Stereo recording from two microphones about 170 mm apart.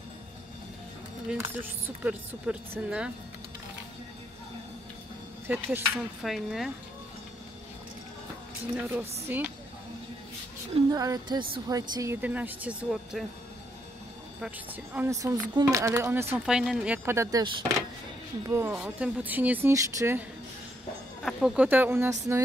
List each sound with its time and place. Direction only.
1.3 s speech: 10° right (ahead or behind)
5.5 s speech: 10° right (ahead or behind)
8.7 s speech: 10° right (ahead or behind)
10.9 s a woman's voice: 20° right (ahead or behind); by 13.2 s 5° right (ahead or behind)
15.0 s a woman's voice: 20° right (ahead or behind)
18.5 s speech: 10° right (ahead or behind)
21.2 s speech: centre (ahead or behind)